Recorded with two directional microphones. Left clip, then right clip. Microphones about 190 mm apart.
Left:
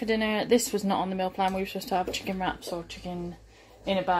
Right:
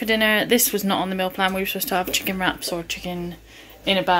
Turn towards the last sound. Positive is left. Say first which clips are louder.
# right 7 dB
turn(degrees=-10)  # may be behind; listen again after turning